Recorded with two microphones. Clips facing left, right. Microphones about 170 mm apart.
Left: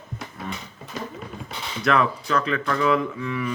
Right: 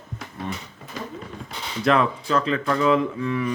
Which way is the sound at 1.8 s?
30° right (ahead or behind).